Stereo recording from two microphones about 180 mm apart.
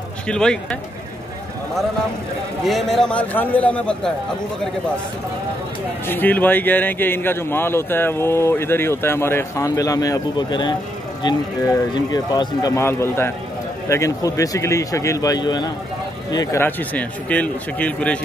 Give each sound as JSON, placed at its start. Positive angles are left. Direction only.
{"t": 0.3, "sound": "speech", "side_deg": 5}
{"t": 2.6, "sound": "speech", "side_deg": 0}
{"t": 6.0, "sound": "speech", "side_deg": 10}
{"t": 16.6, "sound": "speech", "side_deg": 10}